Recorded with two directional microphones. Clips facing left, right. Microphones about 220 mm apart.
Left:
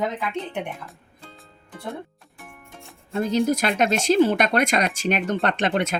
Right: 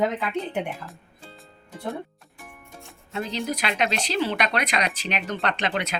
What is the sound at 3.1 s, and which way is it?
Speech, 45° left (ahead or behind).